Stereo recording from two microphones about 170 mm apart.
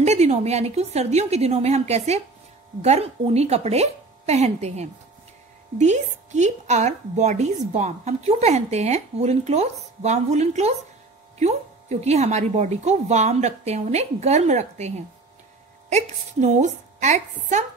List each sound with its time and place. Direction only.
0.0 s a woman's voice: 40° right (ahead or behind)